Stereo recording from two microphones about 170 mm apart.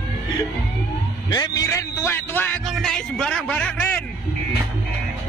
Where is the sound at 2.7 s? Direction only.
Centre (ahead or behind).